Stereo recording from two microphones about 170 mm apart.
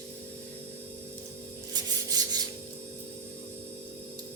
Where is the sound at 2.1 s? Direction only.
25° right (ahead or behind).